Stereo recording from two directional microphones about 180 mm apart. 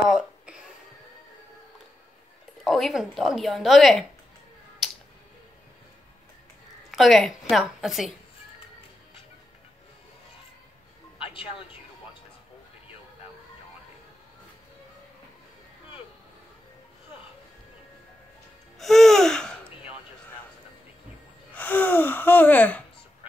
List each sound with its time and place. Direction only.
0.1 s a sound: 5° right (ahead or behind)
2.6 s a woman's voice: centre (ahead or behind)
4.8 s a sound: centre (ahead or behind)
6.9 s a woman's voice: centre (ahead or behind)
11.1 s music: 30° left (ahead or behind)
18.8 s music: centre (ahead or behind)
21.5 s speech: 10° left (ahead or behind)